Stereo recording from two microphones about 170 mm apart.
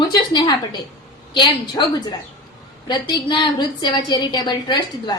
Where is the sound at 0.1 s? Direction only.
25° left (ahead or behind).